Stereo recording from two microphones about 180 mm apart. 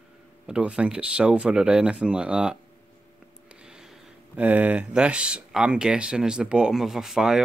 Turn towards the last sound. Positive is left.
turn(degrees=0)  # may be behind; listen again after turning